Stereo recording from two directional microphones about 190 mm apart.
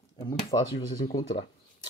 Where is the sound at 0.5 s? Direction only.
25° left (ahead or behind).